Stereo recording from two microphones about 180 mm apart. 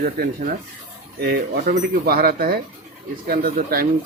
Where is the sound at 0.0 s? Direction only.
55° right (ahead or behind).